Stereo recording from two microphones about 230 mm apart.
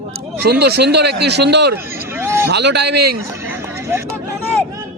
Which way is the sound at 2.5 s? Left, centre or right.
Right.